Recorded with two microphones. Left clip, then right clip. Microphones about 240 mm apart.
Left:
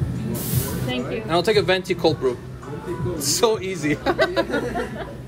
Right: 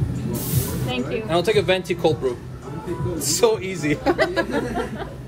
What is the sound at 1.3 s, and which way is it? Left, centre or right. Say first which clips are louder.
A man's voice: even; centre.